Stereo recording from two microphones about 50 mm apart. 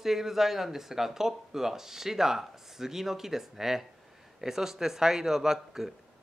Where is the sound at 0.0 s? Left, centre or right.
Centre.